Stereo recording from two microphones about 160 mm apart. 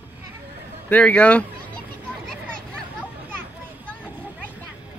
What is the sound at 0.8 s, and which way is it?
Speech, 10° left (ahead or behind).